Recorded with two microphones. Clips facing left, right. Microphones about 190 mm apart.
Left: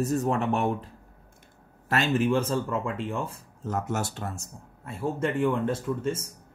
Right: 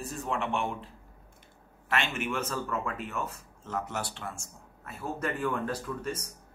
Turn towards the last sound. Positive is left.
turn(degrees=25)  # may be behind; listen again after turning